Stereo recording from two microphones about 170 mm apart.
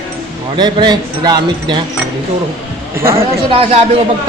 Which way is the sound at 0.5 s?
25° right (ahead or behind).